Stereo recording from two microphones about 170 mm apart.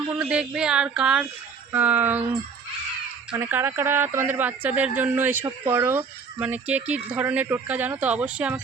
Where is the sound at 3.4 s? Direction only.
15° right (ahead or behind).